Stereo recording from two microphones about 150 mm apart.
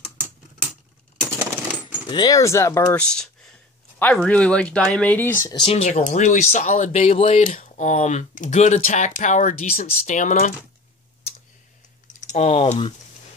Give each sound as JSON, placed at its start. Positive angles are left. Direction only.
{"t": 1.2, "sound": "coin", "side_deg": -10}
{"t": 2.0, "sound": "speech", "side_deg": 25}
{"t": 5.7, "sound": "speech", "side_deg": 50}
{"t": 7.4, "sound": "speech", "side_deg": 60}
{"t": 12.2, "sound": "speech", "side_deg": 50}